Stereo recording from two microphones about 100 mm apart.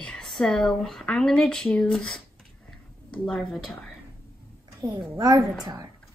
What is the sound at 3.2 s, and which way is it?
Speech, 10° left (ahead or behind).